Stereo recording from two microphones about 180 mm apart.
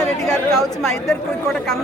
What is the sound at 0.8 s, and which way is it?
Speech, centre (ahead or behind).